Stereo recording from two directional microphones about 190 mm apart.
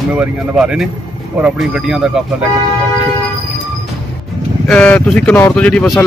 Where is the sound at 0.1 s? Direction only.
5° right (ahead or behind).